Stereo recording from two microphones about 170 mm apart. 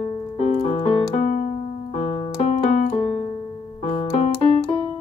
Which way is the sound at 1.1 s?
40° left (ahead or behind).